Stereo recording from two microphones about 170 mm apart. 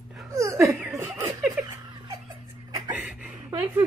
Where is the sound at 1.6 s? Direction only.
10° right (ahead or behind).